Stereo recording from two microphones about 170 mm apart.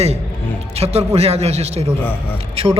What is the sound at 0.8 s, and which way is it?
A man's voice, 35° right (ahead or behind).